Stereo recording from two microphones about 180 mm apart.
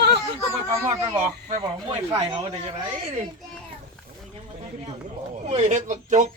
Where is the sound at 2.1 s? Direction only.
30° right (ahead or behind).